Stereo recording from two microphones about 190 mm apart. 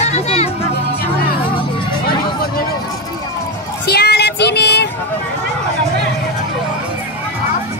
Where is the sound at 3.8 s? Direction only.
55° left (ahead or behind).